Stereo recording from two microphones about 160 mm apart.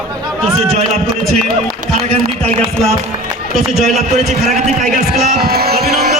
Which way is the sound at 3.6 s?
Centre (ahead or behind).